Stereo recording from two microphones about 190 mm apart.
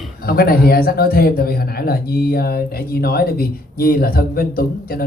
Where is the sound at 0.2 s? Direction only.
50° left (ahead or behind).